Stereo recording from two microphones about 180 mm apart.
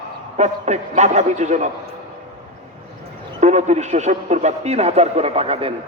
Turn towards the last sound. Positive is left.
turn(degrees=-35)  # may be behind; listen again after turning